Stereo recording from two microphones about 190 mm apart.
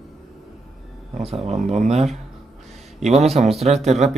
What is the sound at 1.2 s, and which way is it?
Speech, 35° right (ahead or behind).